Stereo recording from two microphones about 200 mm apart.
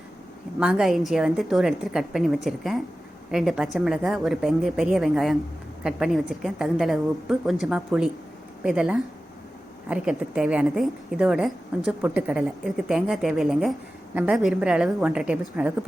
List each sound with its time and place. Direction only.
0.6 s a woman's voice: 5° right (ahead or behind)